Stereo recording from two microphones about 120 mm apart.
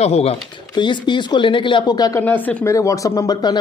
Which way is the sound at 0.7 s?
40° left (ahead or behind).